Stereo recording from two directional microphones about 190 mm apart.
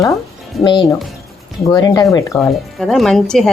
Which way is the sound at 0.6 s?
25° left (ahead or behind).